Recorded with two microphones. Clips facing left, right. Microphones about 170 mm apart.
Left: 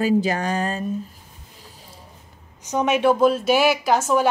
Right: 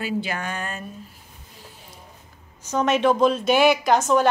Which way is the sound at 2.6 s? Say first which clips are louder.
Left 1 dB; 15° left (ahead or behind).